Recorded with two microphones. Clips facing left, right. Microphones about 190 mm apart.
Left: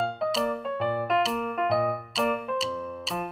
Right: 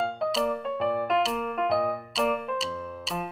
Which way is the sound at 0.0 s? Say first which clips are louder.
Even; centre (ahead or behind).